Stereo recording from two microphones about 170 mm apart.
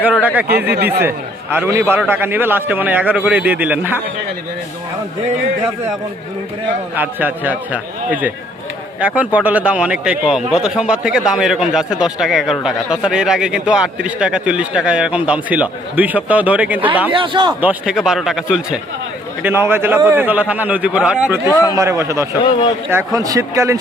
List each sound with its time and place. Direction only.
0.0 s a man's voice: 10° right (ahead or behind)
6.9 s a man's voice: 10° right (ahead or behind)
17.1 s speech: 30° right (ahead or behind)
17.6 s a man's voice: 5° right (ahead or behind)
21.4 s a man's voice: 20° left (ahead or behind)
21.8 s a man's voice: 20° right (ahead or behind)